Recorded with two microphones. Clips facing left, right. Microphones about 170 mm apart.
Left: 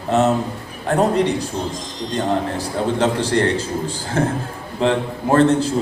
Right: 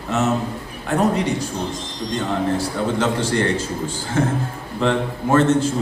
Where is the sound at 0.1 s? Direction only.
35° left (ahead or behind).